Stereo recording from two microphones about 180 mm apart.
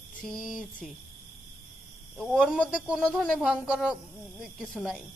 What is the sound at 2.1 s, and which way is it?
Speech, 5° left (ahead or behind).